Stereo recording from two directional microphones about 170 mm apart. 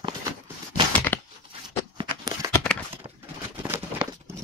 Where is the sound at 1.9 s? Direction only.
25° right (ahead or behind).